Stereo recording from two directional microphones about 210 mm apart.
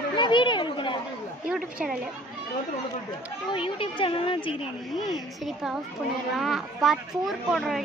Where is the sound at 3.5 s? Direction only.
25° left (ahead or behind).